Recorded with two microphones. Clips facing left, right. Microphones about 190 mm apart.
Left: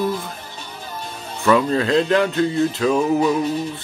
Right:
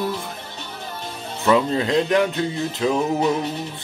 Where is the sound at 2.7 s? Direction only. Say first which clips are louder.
Left 3 dB; 20° right (ahead or behind).